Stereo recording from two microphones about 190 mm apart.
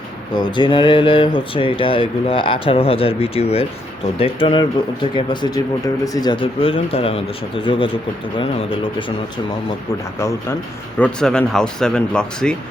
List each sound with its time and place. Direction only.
0.3 s speech: 25° left (ahead or behind)
11.0 s speech: 5° left (ahead or behind)